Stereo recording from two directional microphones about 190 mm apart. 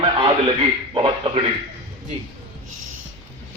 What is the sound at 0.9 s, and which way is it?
Speech, 25° right (ahead or behind).